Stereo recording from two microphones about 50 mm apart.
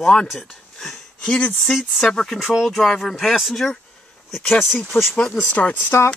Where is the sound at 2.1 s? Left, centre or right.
Centre.